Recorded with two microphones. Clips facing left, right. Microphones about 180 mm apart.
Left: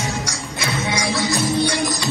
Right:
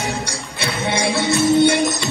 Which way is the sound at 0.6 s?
30° right (ahead or behind).